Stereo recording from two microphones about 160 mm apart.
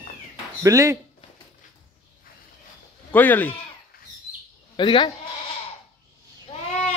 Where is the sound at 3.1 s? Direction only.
10° left (ahead or behind).